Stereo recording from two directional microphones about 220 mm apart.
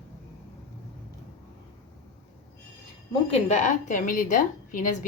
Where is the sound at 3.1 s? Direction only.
30° left (ahead or behind).